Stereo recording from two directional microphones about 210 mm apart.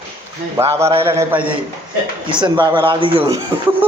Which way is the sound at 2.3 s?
20° right (ahead or behind).